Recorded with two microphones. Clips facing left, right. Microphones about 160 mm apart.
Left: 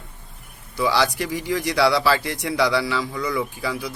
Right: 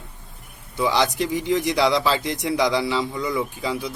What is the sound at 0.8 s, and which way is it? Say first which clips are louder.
Speech: even; 20° right (ahead or behind).